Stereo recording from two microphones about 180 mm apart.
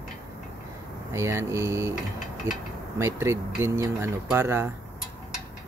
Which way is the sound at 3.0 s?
15° right (ahead or behind).